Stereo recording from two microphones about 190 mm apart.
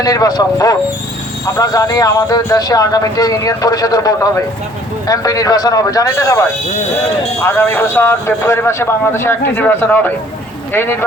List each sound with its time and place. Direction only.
0.0 s a man's voice: 20° left (ahead or behind)